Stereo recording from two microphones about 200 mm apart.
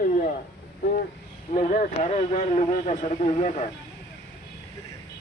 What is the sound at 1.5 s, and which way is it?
Speech, 40° left (ahead or behind).